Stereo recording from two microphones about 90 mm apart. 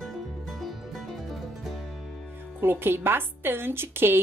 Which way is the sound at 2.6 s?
25° right (ahead or behind).